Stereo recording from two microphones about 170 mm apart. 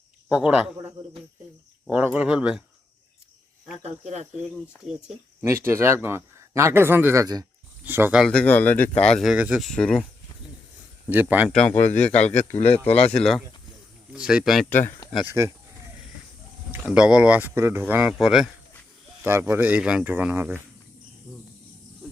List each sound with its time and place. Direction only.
0.3 s speech: 5° right (ahead or behind)
1.9 s speech: 10° right (ahead or behind)
3.8 s speech: 40° right (ahead or behind)
4.9 s speech: 5° right (ahead or behind)
5.5 s speech: 15° right (ahead or behind)
8.2 s speech: 5° left (ahead or behind)
11.1 s speech: 10° right (ahead or behind)
11.4 s speech: 5° left (ahead or behind)
11.7 s speech: 45° left (ahead or behind)
13.1 s speech: centre (ahead or behind)
15.3 s speech: 15° right (ahead or behind)
16.9 s speech: 5° right (ahead or behind)
19.2 s speech: 15° right (ahead or behind)